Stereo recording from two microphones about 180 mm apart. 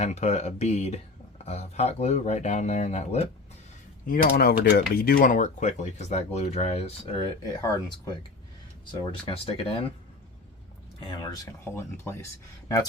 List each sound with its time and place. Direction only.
0.0 s speech: 35° left (ahead or behind)
4.0 s speech: 50° left (ahead or behind)
8.9 s speech: 30° left (ahead or behind)
11.1 s speech: 20° left (ahead or behind)